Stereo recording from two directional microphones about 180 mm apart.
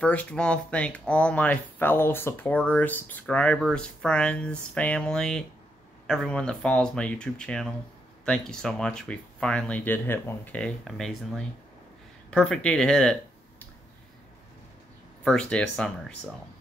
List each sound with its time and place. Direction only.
0.0 s speech: 5° left (ahead or behind)
15.2 s speech: 5° left (ahead or behind)